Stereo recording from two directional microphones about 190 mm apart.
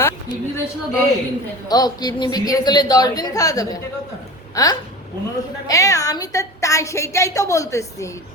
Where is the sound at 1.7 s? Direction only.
20° left (ahead or behind).